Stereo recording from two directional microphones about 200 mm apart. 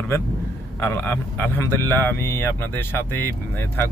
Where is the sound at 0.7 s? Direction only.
10° left (ahead or behind).